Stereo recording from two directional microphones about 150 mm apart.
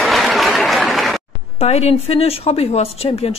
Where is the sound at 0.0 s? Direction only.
Centre (ahead or behind).